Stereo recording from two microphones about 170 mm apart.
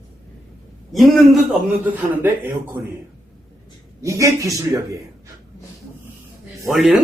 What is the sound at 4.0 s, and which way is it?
A man's voice, 20° right (ahead or behind).